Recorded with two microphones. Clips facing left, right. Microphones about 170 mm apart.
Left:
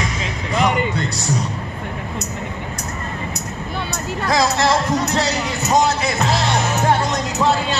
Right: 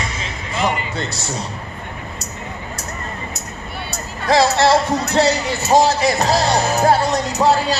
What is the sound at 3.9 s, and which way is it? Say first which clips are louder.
Music: right 4 dB; 30° right (ahead or behind).